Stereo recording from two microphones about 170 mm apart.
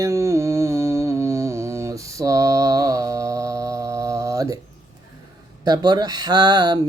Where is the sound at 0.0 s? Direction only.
15° right (ahead or behind).